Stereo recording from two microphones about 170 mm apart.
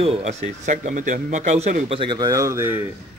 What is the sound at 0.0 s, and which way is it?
Speech, 40° right (ahead or behind).